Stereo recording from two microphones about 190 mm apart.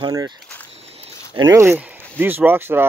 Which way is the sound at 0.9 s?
30° right (ahead or behind).